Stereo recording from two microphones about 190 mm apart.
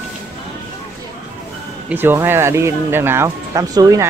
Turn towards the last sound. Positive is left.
turn(degrees=-20)  # may be behind; listen again after turning